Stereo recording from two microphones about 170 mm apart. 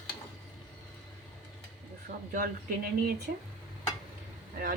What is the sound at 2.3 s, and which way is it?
Speech, 55° right (ahead or behind).